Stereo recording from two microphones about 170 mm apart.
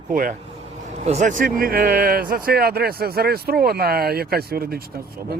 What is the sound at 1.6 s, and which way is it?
Speech, 60° right (ahead or behind).